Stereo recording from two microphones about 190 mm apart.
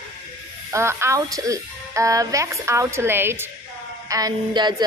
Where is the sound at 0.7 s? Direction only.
15° right (ahead or behind).